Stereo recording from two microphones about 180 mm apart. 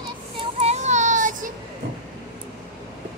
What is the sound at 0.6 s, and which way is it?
Child singing, 40° right (ahead or behind).